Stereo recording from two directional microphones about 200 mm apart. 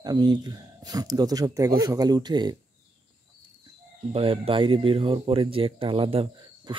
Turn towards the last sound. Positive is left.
turn(degrees=-25)  # may be behind; listen again after turning